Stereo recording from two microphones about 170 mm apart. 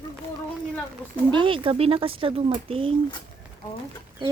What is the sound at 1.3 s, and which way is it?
Speech, 30° right (ahead or behind).